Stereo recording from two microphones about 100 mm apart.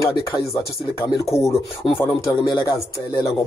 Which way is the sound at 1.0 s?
30° left (ahead or behind).